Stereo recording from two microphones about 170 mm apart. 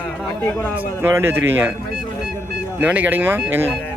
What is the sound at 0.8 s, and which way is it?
Speech, 15° right (ahead or behind).